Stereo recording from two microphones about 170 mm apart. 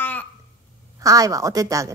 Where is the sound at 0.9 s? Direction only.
20° right (ahead or behind).